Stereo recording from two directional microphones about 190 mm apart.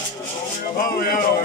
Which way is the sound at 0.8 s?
50° left (ahead or behind).